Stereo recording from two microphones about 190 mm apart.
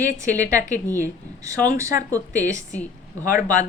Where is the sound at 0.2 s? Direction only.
15° right (ahead or behind).